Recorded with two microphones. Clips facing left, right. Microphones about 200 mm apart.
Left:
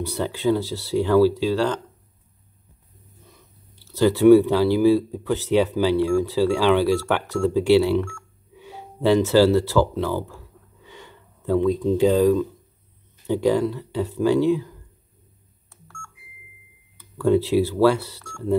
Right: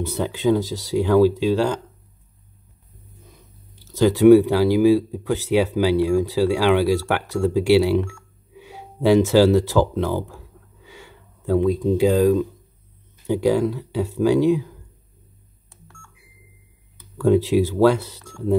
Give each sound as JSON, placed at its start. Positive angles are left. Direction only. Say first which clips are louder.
{"t": 0.0, "sound": "speech", "louder": "right 2 dB", "side_deg": -20}
{"t": 3.9, "sound": "speech", "louder": "right 1 dB", "side_deg": -15}
{"t": 10.8, "sound": "a sound", "louder": "even", "side_deg": -10}
{"t": 11.6, "sound": "speech", "louder": "even", "side_deg": -10}
{"t": 13.3, "sound": "speech", "louder": "right 1 dB", "side_deg": -10}
{"t": 17.4, "sound": "speech", "louder": "right 1 dB", "side_deg": -15}